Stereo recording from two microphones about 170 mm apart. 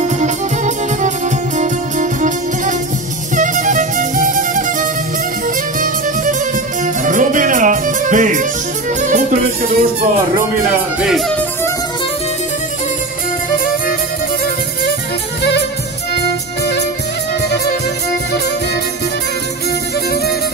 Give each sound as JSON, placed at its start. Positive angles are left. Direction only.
{"t": 0.0, "sound": "music", "side_deg": -45}
{"t": 7.1, "sound": "music", "side_deg": -50}
{"t": 11.0, "sound": "speech", "side_deg": 0}